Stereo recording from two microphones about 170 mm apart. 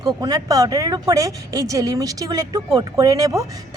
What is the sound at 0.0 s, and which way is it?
Speech, 20° right (ahead or behind).